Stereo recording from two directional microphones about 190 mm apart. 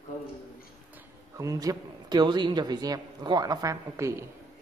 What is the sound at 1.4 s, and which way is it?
A man's voice, 15° right (ahead or behind).